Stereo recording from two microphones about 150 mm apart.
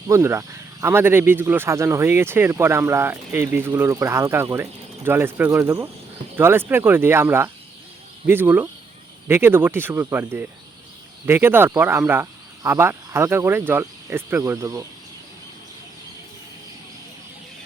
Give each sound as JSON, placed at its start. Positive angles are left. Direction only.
{"t": 0.1, "sound": "speech", "side_deg": -20}